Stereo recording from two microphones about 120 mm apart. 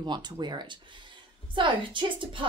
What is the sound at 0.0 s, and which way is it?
A woman's voice, 40° right (ahead or behind).